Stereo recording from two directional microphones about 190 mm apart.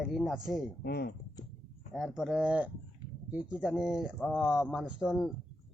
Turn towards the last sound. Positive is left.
turn(degrees=0)  # may be behind; listen again after turning